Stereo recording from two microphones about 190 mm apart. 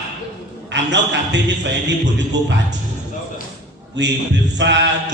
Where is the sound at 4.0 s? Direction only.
70° right (ahead or behind).